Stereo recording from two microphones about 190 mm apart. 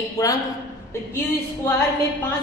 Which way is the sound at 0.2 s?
15° left (ahead or behind).